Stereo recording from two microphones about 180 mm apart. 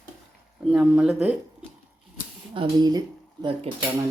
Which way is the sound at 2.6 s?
25° right (ahead or behind).